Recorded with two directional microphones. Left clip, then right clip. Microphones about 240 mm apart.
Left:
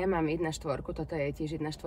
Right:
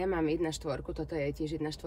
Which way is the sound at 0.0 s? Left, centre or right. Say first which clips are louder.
Left 1 dB; centre.